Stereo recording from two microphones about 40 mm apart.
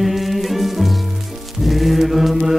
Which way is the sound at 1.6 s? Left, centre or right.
Centre.